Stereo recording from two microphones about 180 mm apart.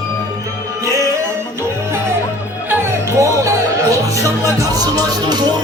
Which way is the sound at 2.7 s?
15° right (ahead or behind).